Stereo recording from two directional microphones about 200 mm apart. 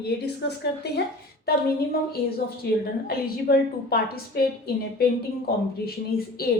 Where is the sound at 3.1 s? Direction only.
50° left (ahead or behind).